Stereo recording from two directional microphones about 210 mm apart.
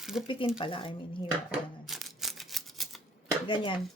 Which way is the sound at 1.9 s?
Centre (ahead or behind).